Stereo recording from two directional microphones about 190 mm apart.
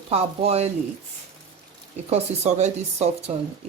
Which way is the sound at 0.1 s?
35° right (ahead or behind).